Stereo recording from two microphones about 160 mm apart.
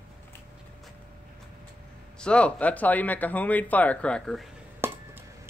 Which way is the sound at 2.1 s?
5° left (ahead or behind).